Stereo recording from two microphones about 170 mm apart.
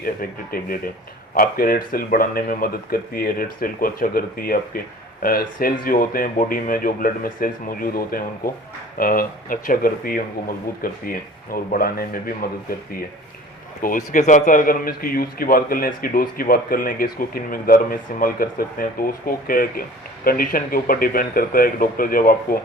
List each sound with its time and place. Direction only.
0.0 s a man's voice: 60° left (ahead or behind)
13.8 s a man's voice: 50° left (ahead or behind)